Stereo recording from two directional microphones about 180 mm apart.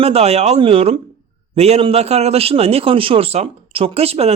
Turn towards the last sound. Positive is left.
turn(degrees=-35)  # may be behind; listen again after turning